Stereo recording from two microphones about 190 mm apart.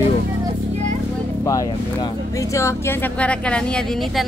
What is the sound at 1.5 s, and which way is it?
Speech, 20° left (ahead or behind).